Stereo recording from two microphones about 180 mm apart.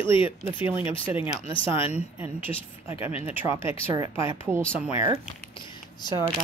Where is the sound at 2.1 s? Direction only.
10° right (ahead or behind).